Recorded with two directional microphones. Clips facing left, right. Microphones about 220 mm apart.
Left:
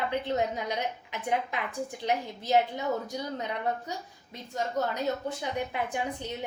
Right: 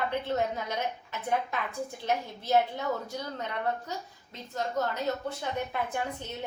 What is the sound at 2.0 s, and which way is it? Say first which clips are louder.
A woman's voice: left 1 dB; 15° left (ahead or behind).